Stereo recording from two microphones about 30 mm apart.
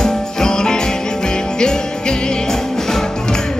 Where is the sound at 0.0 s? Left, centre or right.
Left.